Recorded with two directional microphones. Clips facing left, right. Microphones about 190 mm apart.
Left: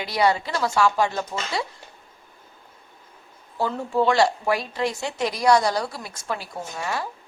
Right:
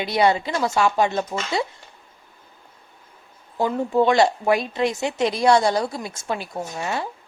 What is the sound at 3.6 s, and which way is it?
Speech, 20° right (ahead or behind).